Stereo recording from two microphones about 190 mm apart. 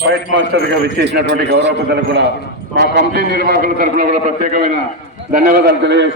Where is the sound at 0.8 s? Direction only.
60° right (ahead or behind); by 4.8 s 45° right (ahead or behind).